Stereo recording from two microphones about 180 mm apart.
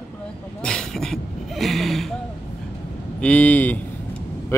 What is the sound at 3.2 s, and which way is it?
Speech, 5° left (ahead or behind).